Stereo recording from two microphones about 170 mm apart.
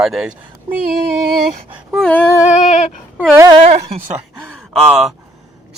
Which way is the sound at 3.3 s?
20° right (ahead or behind).